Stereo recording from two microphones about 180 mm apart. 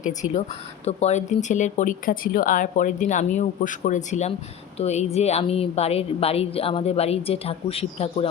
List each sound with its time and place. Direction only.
0.9 s a woman's voice: 35° left (ahead or behind)